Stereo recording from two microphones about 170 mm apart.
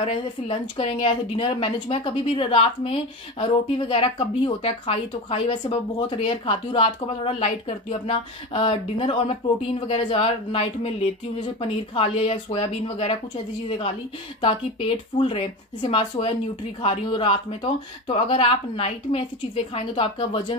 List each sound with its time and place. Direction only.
0.0 s a woman's voice: 30° left (ahead or behind)
14.4 s a woman's voice: 35° left (ahead or behind)